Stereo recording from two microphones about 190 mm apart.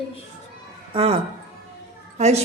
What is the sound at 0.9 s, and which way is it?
Speech, 30° right (ahead or behind).